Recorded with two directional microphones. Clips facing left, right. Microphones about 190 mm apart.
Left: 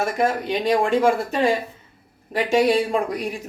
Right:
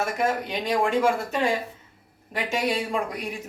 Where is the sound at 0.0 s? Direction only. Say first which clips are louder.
Left 4 dB; 35° left (ahead or behind).